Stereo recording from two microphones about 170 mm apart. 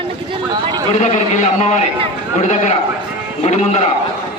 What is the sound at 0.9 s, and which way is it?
Speech, 40° left (ahead or behind).